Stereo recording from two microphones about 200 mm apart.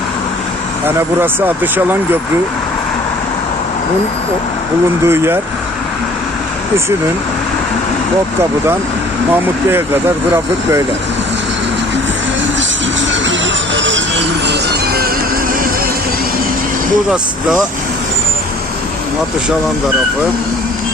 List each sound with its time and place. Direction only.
0.9 s speech: 10° right (ahead or behind)
5.0 s speech: 10° right (ahead or behind)
9.3 s speech: 10° right (ahead or behind)
13.7 s music: 65° right (ahead or behind)
14.4 s music: 55° right (ahead or behind)